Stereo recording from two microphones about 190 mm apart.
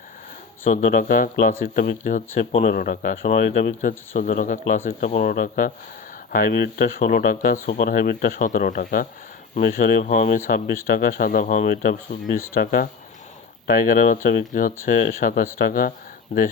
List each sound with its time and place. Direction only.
0.7 s speech: 40° left (ahead or behind)